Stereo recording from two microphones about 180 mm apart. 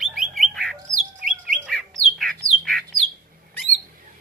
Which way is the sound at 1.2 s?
50° right (ahead or behind).